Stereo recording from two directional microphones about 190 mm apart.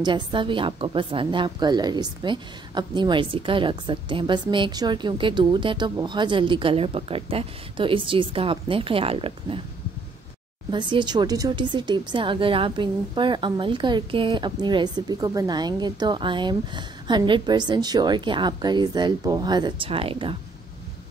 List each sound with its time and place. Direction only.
0.0 s a woman's voice: 25° right (ahead or behind)
10.7 s a woman's voice: 25° right (ahead or behind)